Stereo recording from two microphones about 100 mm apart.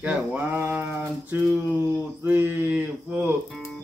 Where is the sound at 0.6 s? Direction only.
20° right (ahead or behind).